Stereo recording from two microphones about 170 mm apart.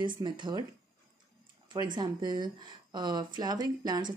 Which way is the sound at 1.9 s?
25° right (ahead or behind).